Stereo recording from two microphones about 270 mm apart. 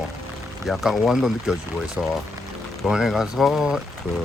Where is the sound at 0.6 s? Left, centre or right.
Centre.